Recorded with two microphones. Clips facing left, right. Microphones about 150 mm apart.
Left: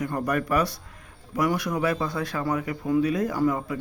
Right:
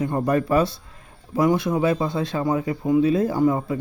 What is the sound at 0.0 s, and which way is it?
Speech, 25° right (ahead or behind).